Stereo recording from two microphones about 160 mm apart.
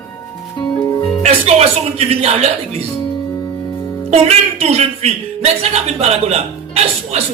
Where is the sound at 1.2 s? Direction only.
40° right (ahead or behind).